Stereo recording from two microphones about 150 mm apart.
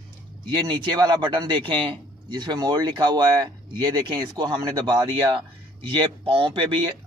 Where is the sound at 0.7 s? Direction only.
30° right (ahead or behind).